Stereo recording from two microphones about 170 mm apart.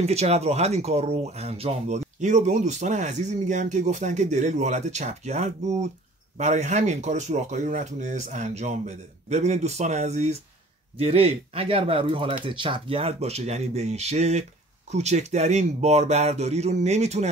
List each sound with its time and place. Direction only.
0.0 s speech: 40° right (ahead or behind)